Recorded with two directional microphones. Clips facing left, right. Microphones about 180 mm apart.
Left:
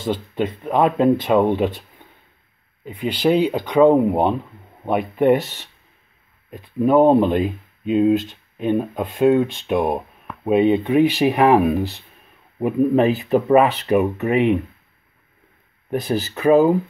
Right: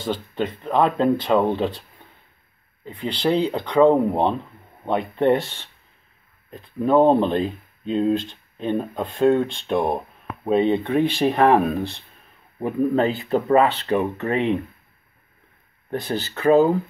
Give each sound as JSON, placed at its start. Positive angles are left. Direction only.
{"t": 0.0, "sound": "speech", "side_deg": 10}
{"t": 3.0, "sound": "speech", "side_deg": 15}
{"t": 15.9, "sound": "speech", "side_deg": 15}